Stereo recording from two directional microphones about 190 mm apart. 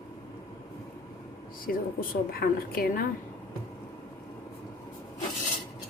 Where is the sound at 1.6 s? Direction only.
50° left (ahead or behind).